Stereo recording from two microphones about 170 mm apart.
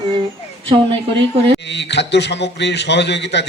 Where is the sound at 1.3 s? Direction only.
35° right (ahead or behind).